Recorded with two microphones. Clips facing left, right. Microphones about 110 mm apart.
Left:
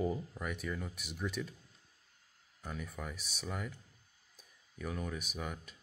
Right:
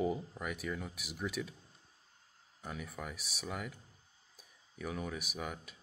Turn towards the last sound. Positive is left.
turn(degrees=-5)  # may be behind; listen again after turning